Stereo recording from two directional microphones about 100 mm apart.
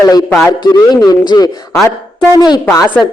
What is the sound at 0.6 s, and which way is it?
A man's voice, 45° left (ahead or behind).